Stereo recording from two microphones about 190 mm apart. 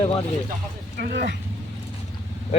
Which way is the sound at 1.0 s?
55° right (ahead or behind).